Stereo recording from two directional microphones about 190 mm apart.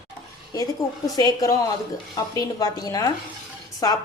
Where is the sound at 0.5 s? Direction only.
20° left (ahead or behind).